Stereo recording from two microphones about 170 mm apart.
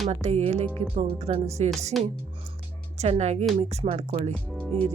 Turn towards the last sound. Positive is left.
turn(degrees=-40)  # may be behind; listen again after turning